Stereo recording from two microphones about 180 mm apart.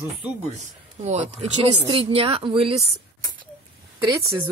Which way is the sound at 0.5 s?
40° right (ahead or behind).